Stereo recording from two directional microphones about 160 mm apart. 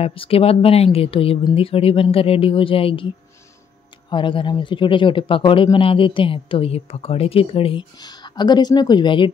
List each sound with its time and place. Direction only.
0.0 s speech: 35° left (ahead or behind)
4.1 s speech: 30° left (ahead or behind)